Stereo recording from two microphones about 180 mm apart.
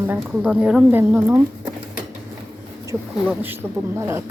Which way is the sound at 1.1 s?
15° right (ahead or behind).